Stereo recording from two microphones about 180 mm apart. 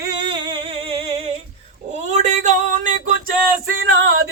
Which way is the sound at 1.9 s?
40° right (ahead or behind).